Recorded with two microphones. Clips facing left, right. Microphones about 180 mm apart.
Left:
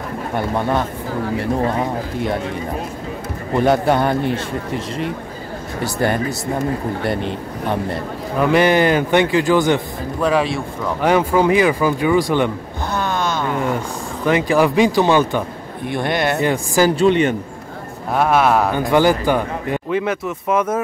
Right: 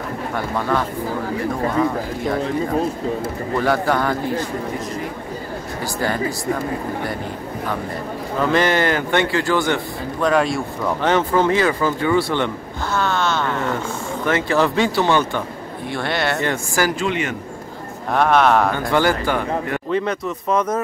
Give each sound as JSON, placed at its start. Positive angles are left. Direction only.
{"t": 0.3, "sound": "speech", "side_deg": 20}
{"t": 3.5, "sound": "speech", "side_deg": 20}
{"t": 7.6, "sound": "speech", "side_deg": 25}
{"t": 10.2, "sound": "speech", "side_deg": 0}
{"t": 12.9, "sound": "a sound", "side_deg": 15}
{"t": 14.2, "sound": "speech", "side_deg": 15}
{"t": 18.1, "sound": "speech", "side_deg": 5}
{"t": 19.9, "sound": "speech", "side_deg": 5}